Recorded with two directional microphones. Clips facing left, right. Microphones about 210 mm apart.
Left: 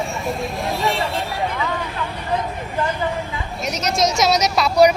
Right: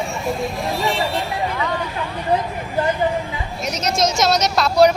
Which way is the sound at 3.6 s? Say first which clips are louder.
Even; centre (ahead or behind).